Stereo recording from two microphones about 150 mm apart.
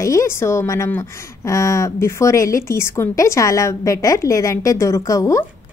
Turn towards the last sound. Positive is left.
turn(degrees=20)  # may be behind; listen again after turning